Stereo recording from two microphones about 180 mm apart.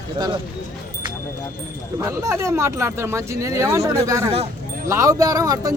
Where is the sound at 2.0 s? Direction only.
15° right (ahead or behind).